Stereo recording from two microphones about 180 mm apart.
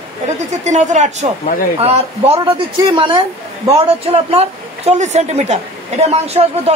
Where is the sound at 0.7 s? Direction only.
40° right (ahead or behind).